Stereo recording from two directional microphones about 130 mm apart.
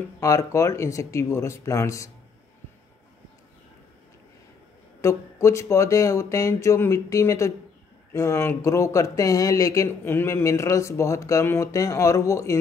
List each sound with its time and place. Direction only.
0.2 s speech: 25° left (ahead or behind)
5.0 s speech: 20° left (ahead or behind)